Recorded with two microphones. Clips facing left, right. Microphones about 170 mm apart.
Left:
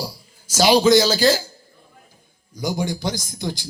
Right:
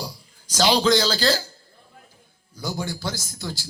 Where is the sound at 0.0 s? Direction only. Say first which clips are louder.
Left 4 dB; 10° left (ahead or behind).